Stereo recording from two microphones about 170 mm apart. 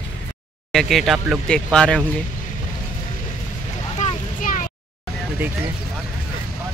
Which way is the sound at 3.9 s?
45° left (ahead or behind).